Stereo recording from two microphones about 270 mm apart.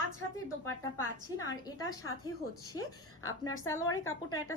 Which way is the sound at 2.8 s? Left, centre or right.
Left.